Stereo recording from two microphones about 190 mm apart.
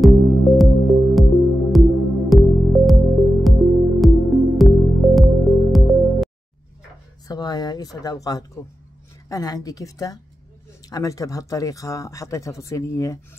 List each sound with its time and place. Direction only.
0.0 s music: centre (ahead or behind)
7.2 s a woman's voice: 20° left (ahead or behind)